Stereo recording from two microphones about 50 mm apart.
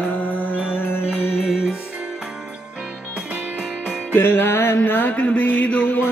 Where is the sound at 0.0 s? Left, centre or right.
Left.